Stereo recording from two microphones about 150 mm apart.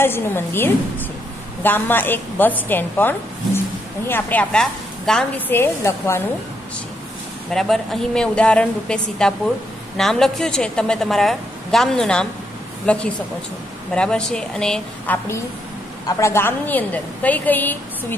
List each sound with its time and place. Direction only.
0.0 s a woman's voice: 15° left (ahead or behind)
5.5 s a woman's voice: 15° left (ahead or behind)
7.5 s a woman's voice: centre (ahead or behind)
16.1 s a woman's voice: 20° left (ahead or behind)